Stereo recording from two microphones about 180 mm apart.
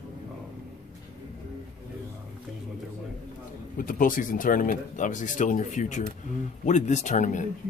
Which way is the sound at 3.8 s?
50° left (ahead or behind).